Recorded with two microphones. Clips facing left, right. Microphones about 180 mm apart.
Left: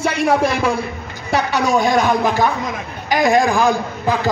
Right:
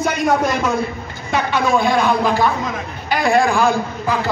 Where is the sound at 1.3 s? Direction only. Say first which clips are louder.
Left 1 dB; 40° left (ahead or behind).